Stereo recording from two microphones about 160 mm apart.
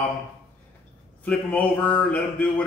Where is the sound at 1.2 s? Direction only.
10° left (ahead or behind).